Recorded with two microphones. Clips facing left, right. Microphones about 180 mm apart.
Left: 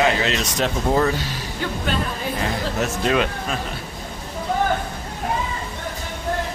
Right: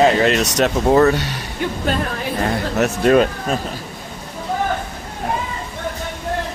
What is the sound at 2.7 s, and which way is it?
Speech, 50° right (ahead or behind).